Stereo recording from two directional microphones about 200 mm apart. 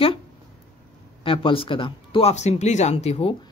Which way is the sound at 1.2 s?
25° left (ahead or behind).